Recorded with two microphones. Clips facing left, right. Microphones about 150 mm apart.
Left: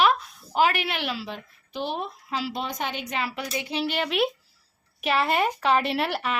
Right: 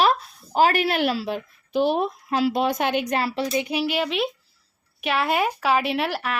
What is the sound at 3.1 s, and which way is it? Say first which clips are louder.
Speech: right 6 dB; 35° right (ahead or behind).